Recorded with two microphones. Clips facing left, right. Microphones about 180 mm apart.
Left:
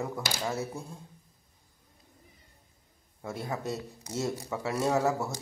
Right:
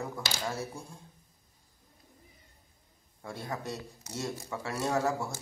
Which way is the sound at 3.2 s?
20° left (ahead or behind).